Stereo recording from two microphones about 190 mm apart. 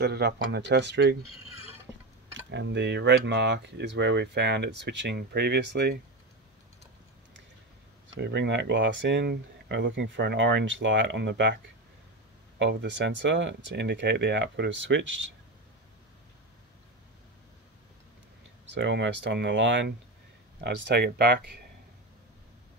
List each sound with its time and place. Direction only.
0.0 s speech: 60° right (ahead or behind)
2.5 s speech: 65° right (ahead or behind)
8.1 s speech: 65° right (ahead or behind)
18.8 s speech: 70° right (ahead or behind)
20.6 s speech: 60° right (ahead or behind)